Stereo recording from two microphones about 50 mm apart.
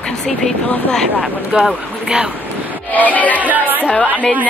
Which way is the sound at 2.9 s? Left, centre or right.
Left.